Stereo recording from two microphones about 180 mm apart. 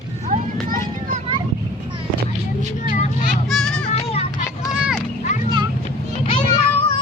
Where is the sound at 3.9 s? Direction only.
35° left (ahead or behind).